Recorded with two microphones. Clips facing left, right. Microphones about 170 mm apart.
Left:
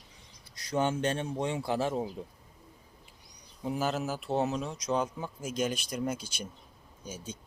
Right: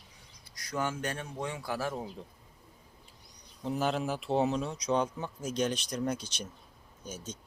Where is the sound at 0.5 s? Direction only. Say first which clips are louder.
Left 5 dB; 25° left (ahead or behind).